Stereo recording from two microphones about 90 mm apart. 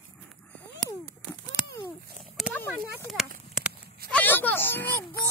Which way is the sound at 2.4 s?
Centre (ahead or behind).